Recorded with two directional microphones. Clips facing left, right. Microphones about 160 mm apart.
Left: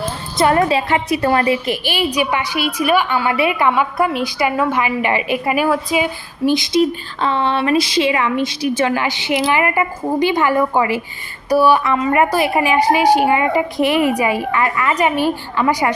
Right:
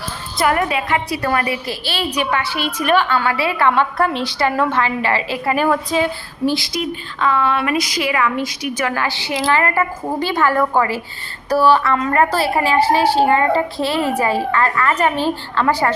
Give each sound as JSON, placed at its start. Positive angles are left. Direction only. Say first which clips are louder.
{"t": 0.3, "sound": "a woman's voice", "louder": "left 3 dB", "side_deg": 30}
{"t": 7.2, "sound": "a woman's voice", "louder": "even", "side_deg": 30}